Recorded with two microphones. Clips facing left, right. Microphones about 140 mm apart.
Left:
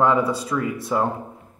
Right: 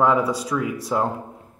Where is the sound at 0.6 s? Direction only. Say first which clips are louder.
Left 1 dB; 5° right (ahead or behind).